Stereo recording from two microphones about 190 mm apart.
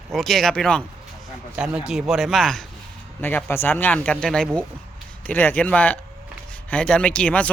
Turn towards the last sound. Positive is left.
turn(degrees=5)  # may be behind; listen again after turning